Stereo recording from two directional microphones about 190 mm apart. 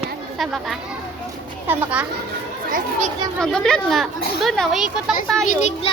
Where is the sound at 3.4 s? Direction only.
5° left (ahead or behind).